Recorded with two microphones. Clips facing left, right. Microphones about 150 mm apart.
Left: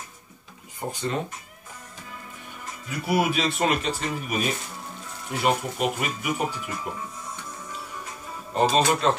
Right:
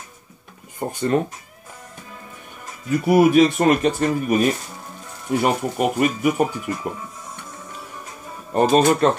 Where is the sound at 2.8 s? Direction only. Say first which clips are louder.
Right 9 dB; 50° right (ahead or behind).